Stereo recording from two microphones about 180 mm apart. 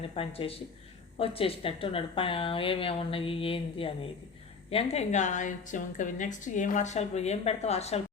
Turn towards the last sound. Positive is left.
turn(degrees=35)  # may be behind; listen again after turning